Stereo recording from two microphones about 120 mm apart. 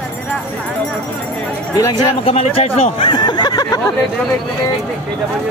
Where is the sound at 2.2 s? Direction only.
55° left (ahead or behind).